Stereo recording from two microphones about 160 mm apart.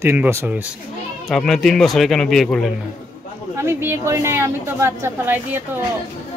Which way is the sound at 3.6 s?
15° right (ahead or behind).